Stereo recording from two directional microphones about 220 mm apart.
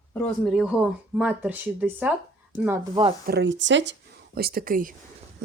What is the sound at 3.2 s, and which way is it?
Speech, 50° right (ahead or behind).